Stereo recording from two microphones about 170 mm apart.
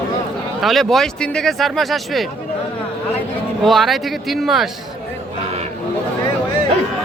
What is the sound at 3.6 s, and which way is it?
Speech, centre (ahead or behind).